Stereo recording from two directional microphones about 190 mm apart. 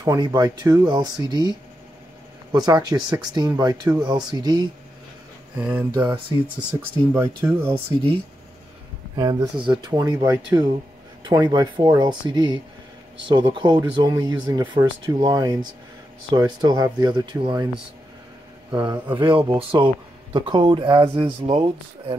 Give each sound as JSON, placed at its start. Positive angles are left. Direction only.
{"t": 0.0, "sound": "speech", "side_deg": -20}
{"t": 5.6, "sound": "speech", "side_deg": -10}
{"t": 6.0, "sound": "speech", "side_deg": -25}
{"t": 7.2, "sound": "speech", "side_deg": -15}
{"t": 7.7, "sound": "speech", "side_deg": -30}
{"t": 18.7, "sound": "speech", "side_deg": -20}